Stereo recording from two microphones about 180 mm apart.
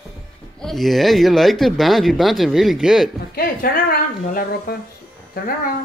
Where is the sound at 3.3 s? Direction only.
55° left (ahead or behind).